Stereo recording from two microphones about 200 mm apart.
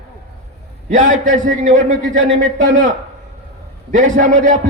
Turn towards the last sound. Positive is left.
turn(degrees=-40)  # may be behind; listen again after turning